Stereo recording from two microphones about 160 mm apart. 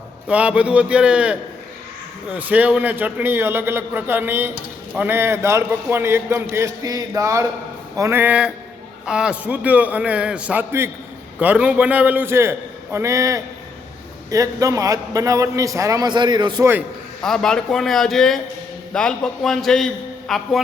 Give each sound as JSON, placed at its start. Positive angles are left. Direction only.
{"t": 0.3, "sound": "a man's voice", "side_deg": -10}
{"t": 17.2, "sound": "a man's voice", "side_deg": 5}